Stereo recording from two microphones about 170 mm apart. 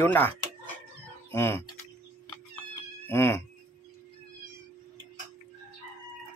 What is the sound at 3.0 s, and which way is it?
Speech, 15° left (ahead or behind).